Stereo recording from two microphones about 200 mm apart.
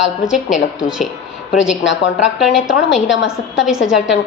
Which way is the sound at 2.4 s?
Centre (ahead or behind).